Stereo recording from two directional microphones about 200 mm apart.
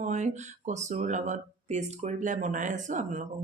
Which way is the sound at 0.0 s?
35° right (ahead or behind).